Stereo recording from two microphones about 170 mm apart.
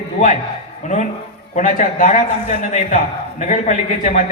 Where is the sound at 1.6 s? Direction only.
50° left (ahead or behind).